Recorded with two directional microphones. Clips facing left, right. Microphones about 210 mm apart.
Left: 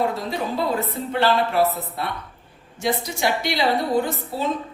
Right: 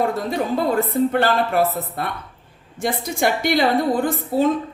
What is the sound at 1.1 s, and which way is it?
A woman's voice, 50° right (ahead or behind).